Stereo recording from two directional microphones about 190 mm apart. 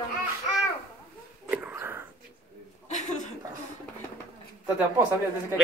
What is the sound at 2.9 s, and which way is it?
Chuckle, 40° left (ahead or behind).